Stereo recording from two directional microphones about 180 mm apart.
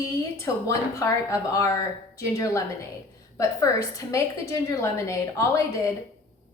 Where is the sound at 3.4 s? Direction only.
20° left (ahead or behind).